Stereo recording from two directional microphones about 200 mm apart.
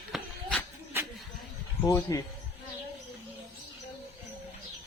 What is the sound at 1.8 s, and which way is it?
Speech, 15° left (ahead or behind).